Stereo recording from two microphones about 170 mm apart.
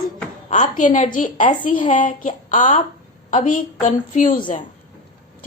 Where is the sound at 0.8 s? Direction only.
45° left (ahead or behind).